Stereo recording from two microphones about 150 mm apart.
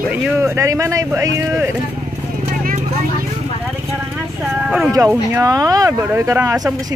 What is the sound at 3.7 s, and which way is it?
Vehicle, centre (ahead or behind).